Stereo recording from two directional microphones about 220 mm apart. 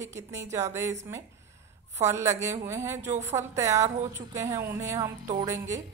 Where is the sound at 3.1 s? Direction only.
30° right (ahead or behind).